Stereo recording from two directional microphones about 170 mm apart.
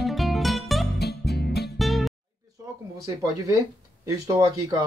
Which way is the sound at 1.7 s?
Centre (ahead or behind).